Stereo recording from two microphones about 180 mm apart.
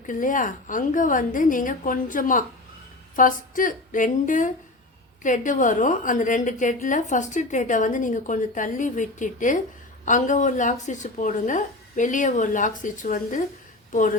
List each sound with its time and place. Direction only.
0.1 s a woman's voice: 45° left (ahead or behind)